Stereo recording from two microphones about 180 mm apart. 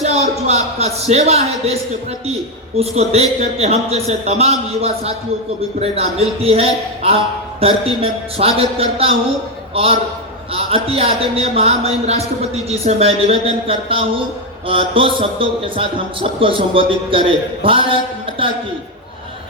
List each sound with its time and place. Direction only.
0.0 s a man's voice: 35° right (ahead or behind)